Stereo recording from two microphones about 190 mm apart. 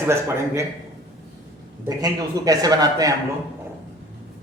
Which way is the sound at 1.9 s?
20° right (ahead or behind).